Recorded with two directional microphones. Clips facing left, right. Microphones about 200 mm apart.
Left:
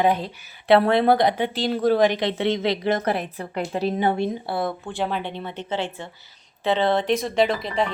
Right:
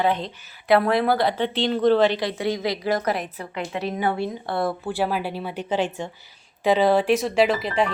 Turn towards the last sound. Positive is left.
turn(degrees=-5)  # may be behind; listen again after turning